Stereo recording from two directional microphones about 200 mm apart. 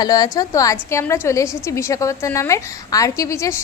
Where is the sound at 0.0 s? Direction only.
20° left (ahead or behind).